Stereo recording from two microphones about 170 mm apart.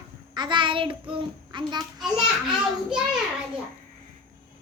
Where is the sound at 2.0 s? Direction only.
Centre (ahead or behind).